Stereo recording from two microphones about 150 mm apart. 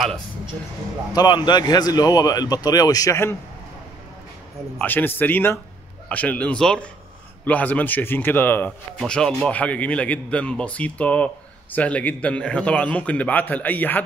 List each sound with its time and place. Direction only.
1.1 s speech: 30° left (ahead or behind)
4.7 s speech: 10° left (ahead or behind)